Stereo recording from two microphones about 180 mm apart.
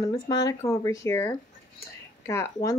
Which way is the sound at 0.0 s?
20° left (ahead or behind).